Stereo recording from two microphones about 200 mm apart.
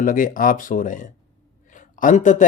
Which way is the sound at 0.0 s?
40° left (ahead or behind).